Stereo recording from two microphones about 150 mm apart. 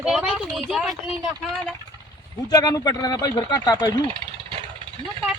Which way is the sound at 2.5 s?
25° left (ahead or behind).